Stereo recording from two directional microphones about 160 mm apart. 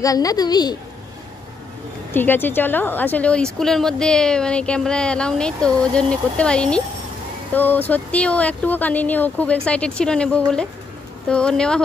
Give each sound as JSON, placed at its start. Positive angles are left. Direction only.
{"t": 0.0, "sound": "a woman's voice", "side_deg": 20}
{"t": 2.1, "sound": "speech", "side_deg": 10}